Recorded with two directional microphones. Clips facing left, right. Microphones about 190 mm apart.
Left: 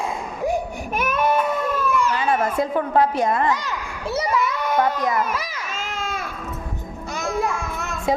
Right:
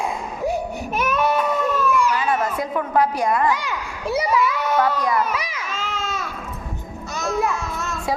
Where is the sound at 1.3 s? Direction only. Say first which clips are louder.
Right 1 dB; 10° left (ahead or behind).